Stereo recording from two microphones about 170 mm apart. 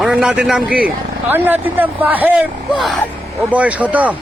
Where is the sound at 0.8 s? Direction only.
10° right (ahead or behind).